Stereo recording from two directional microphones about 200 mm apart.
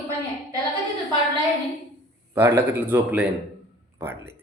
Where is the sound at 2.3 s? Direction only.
10° right (ahead or behind).